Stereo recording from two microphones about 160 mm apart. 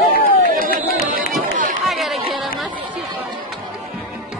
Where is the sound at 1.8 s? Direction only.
Centre (ahead or behind).